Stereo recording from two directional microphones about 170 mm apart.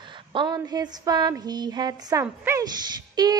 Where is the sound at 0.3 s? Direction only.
25° right (ahead or behind).